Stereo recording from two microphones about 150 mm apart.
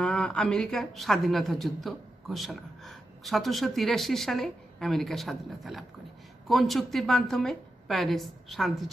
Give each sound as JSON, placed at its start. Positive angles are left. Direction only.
{"t": 0.0, "sound": "speech", "side_deg": 5}